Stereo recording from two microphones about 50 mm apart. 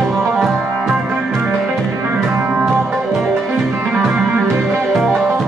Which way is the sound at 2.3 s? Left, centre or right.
Right.